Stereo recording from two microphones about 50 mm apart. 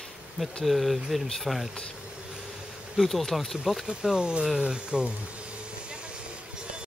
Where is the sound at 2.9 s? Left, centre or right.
Centre.